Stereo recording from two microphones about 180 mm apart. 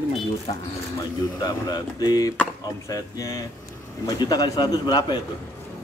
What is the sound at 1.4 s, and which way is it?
A man's voice, 25° left (ahead or behind).